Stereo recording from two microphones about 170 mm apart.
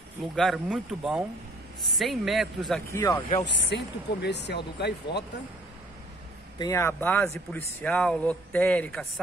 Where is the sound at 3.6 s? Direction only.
90° left.